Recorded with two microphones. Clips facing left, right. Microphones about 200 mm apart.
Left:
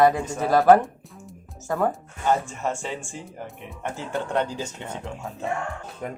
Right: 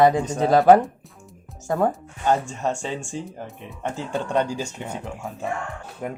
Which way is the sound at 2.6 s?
15° right (ahead or behind).